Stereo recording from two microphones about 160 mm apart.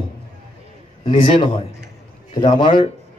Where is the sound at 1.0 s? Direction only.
30° left (ahead or behind).